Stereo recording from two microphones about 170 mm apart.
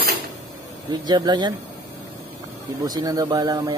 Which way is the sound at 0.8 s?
25° right (ahead or behind).